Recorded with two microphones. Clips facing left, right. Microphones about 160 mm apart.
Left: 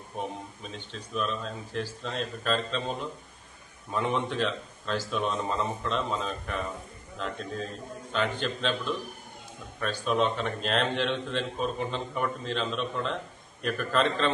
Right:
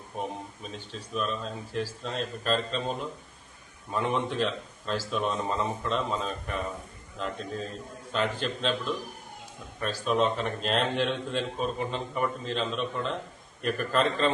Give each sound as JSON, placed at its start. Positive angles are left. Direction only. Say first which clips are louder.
{"t": 0.2, "sound": "a man's voice", "louder": "right 1 dB", "side_deg": 0}